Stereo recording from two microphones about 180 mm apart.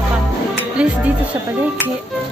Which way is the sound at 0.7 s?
5° right (ahead or behind).